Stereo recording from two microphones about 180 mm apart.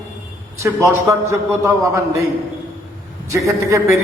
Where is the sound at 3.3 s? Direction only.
15° right (ahead or behind).